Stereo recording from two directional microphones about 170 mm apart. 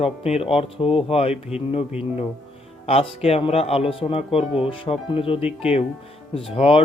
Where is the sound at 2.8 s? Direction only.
35° left (ahead or behind).